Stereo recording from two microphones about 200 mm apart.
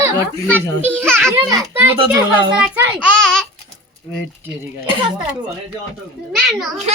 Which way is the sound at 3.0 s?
5° left (ahead or behind).